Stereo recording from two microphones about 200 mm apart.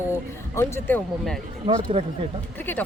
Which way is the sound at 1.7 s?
30° right (ahead or behind).